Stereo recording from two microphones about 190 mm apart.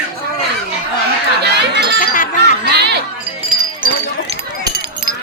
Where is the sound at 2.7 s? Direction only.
60° right (ahead or behind).